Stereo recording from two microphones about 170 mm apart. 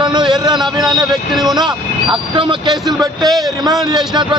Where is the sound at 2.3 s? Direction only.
30° right (ahead or behind).